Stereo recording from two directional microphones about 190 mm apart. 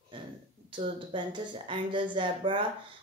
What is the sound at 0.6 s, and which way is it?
Speech, 25° right (ahead or behind).